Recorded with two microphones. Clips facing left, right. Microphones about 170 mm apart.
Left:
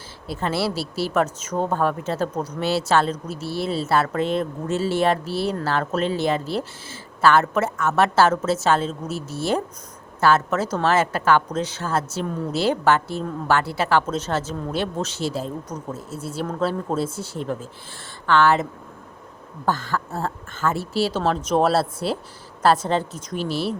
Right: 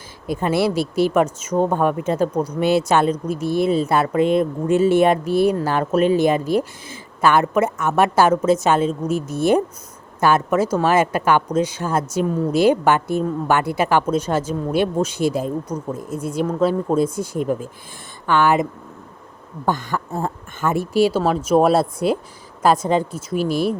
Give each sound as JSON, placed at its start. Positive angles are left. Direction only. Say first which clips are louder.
{"t": 0.3, "sound": "speech", "louder": "right 5 dB", "side_deg": -15}
{"t": 0.7, "sound": "speech", "louder": "right 8 dB", "side_deg": -50}
{"t": 1.1, "sound": "speech", "louder": "right 4 dB", "side_deg": -10}